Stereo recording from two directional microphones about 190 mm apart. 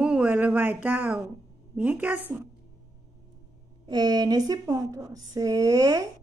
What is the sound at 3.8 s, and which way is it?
Speech, 20° right (ahead or behind).